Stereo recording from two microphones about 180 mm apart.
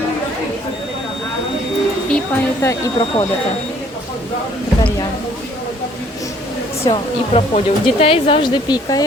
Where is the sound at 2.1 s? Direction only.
15° left (ahead or behind).